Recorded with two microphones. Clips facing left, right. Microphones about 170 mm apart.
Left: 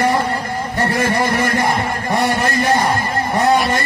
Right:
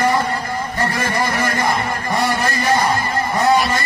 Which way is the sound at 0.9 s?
45° left (ahead or behind).